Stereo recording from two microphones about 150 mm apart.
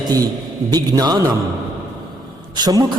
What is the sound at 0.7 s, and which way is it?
Music, 25° right (ahead or behind).